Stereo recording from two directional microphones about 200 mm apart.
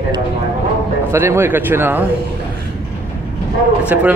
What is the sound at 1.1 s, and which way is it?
Speech, 10° right (ahead or behind).